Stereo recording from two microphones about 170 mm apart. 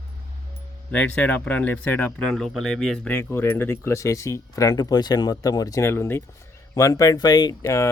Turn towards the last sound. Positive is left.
turn(degrees=15)  # may be behind; listen again after turning